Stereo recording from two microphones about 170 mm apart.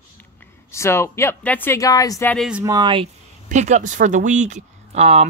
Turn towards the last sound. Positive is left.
turn(degrees=-40)  # may be behind; listen again after turning